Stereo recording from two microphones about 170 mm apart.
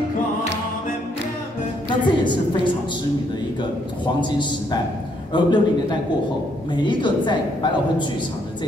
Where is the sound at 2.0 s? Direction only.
25° left (ahead or behind).